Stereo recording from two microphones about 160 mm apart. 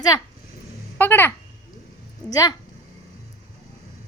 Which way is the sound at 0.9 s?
15° left (ahead or behind).